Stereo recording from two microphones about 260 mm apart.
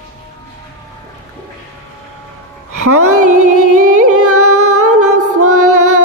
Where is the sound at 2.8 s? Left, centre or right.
Right.